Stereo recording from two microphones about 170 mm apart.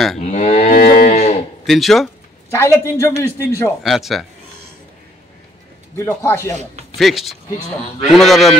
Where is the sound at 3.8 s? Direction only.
Centre (ahead or behind).